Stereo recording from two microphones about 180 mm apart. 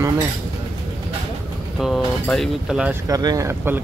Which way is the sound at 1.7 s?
Centre (ahead or behind).